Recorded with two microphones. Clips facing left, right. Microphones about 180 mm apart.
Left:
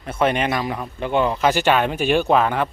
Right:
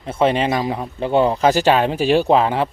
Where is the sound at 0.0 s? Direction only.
30° right (ahead or behind).